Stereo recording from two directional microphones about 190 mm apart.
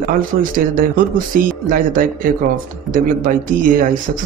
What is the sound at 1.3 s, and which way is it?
Speech, 45° right (ahead or behind).